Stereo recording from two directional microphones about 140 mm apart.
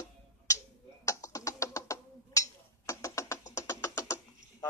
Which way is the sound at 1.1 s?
20° left (ahead or behind).